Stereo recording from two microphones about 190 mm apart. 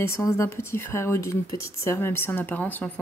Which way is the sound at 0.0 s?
15° left (ahead or behind).